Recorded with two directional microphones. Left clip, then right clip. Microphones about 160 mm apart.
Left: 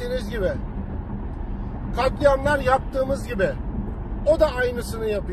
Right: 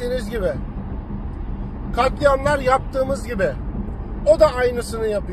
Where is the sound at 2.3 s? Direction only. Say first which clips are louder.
Right 2 dB; 20° right (ahead or behind).